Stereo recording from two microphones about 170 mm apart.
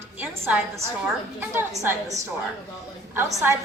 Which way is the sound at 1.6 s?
15° right (ahead or behind).